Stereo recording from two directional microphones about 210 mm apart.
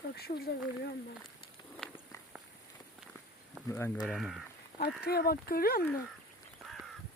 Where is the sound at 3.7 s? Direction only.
10° left (ahead or behind).